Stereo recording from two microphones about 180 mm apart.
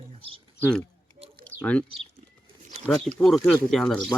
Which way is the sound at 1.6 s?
5° left (ahead or behind).